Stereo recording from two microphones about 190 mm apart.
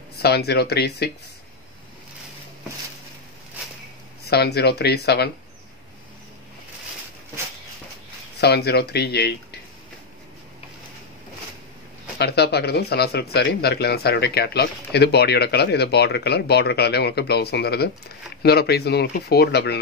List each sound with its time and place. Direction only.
0.2 s speech: 60° left (ahead or behind)
4.3 s speech: 55° left (ahead or behind)
8.4 s speech: 55° left (ahead or behind)
12.2 s speech: 60° left (ahead or behind)